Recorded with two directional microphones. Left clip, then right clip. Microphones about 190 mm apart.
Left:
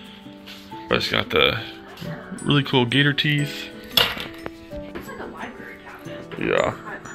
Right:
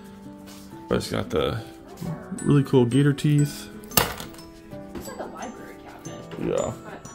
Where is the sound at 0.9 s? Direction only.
20° right (ahead or behind).